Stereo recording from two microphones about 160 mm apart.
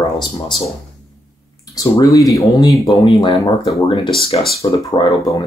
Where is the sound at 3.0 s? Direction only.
30° left (ahead or behind).